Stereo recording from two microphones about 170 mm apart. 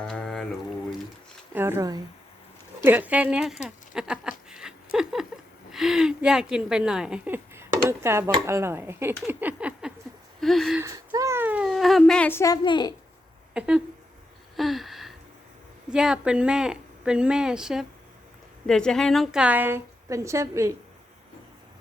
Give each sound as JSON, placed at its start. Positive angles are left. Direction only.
{"t": 0.0, "sound": "a sound", "side_deg": 5}
{"t": 1.5, "sound": "a woman's voice", "side_deg": -15}
{"t": 3.9, "sound": "a sound", "side_deg": -5}
{"t": 5.7, "sound": "a woman's voice", "side_deg": 0}
{"t": 10.8, "sound": "a woman's voice", "side_deg": -20}
{"t": 12.6, "sound": "a woman's voice", "side_deg": 25}
{"t": 13.5, "sound": "speech", "side_deg": -5}
{"t": 14.5, "sound": "gasp", "side_deg": 0}
{"t": 15.9, "sound": "a woman's voice", "side_deg": -5}